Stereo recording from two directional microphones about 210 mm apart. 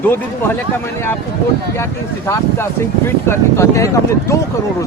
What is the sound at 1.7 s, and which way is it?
Speech, 10° left (ahead or behind).